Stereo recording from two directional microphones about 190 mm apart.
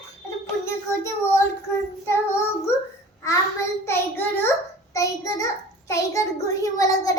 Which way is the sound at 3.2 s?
15° left (ahead or behind).